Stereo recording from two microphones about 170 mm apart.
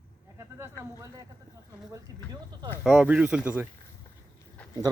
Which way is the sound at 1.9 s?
20° right (ahead or behind).